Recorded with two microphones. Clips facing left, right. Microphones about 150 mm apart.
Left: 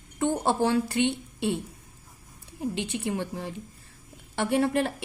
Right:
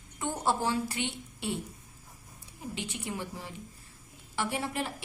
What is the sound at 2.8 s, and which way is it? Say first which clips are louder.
A woman's voice: left 5 dB; 70° left (ahead or behind).